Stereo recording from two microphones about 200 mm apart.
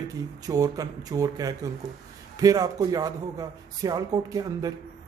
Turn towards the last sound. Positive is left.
turn(degrees=-20)  # may be behind; listen again after turning